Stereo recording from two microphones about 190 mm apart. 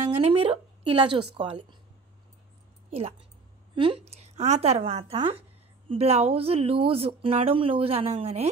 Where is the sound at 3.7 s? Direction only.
30° right (ahead or behind).